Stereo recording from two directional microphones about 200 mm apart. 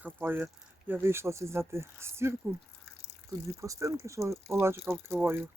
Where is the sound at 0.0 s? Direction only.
10° right (ahead or behind).